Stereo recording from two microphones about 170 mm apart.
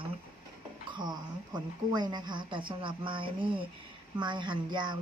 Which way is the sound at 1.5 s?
25° right (ahead or behind).